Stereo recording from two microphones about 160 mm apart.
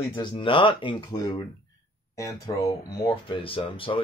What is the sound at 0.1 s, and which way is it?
Speech, 30° left (ahead or behind).